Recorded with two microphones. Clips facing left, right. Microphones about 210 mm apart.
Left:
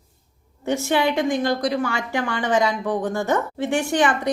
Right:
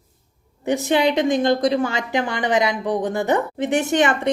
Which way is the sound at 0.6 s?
15° right (ahead or behind).